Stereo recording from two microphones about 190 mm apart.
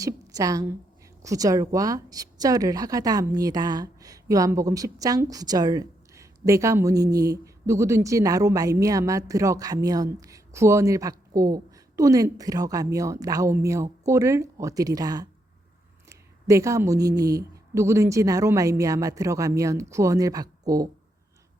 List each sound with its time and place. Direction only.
0.0 s a woman's voice: 15° right (ahead or behind)